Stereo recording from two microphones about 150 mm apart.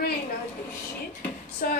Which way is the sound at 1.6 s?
75° left (ahead or behind).